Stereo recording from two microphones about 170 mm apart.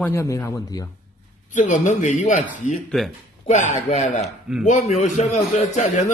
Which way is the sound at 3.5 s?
45° left (ahead or behind).